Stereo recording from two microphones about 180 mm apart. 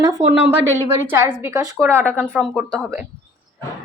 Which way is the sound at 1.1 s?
10° right (ahead or behind).